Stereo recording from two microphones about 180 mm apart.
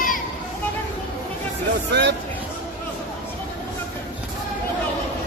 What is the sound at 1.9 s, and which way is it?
Speech, 75° right (ahead or behind).